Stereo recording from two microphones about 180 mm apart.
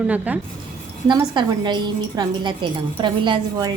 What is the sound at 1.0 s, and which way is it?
A woman's voice, 25° right (ahead or behind).